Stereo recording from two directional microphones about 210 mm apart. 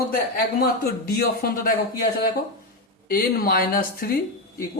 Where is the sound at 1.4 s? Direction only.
45° left (ahead or behind).